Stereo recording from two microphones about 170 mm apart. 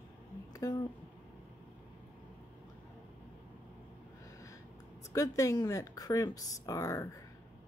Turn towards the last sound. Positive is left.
turn(degrees=20)  # may be behind; listen again after turning